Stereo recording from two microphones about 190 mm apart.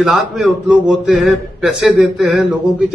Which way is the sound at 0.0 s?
Centre (ahead or behind).